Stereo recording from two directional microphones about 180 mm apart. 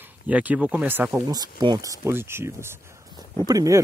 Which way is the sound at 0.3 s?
10° right (ahead or behind).